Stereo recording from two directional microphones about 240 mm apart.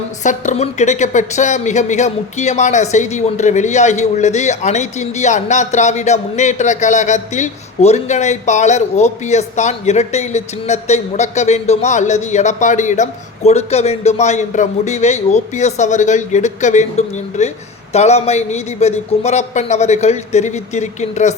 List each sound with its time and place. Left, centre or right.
0.2 s a woman's voice: left